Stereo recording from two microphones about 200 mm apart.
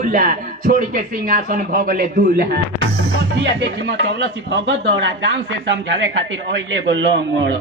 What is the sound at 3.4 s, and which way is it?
Speech, 60° right (ahead or behind).